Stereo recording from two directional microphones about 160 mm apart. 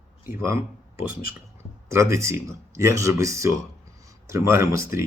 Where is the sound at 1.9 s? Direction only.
20° right (ahead or behind).